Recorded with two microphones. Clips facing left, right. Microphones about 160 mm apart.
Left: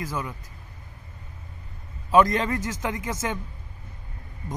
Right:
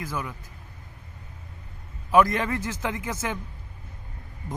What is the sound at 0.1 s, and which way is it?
Speech, 20° left (ahead or behind).